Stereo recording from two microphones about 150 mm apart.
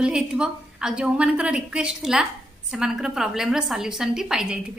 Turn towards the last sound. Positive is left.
turn(degrees=-5)  # may be behind; listen again after turning